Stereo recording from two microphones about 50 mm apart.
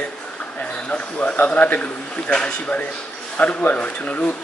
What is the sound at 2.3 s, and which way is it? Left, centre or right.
A man's voice, centre.